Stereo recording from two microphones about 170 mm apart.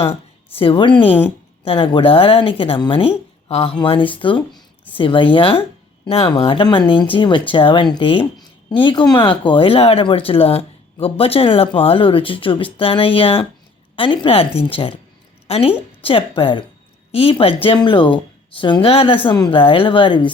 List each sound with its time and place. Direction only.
0.1 s a woman's voice: 35° left (ahead or behind)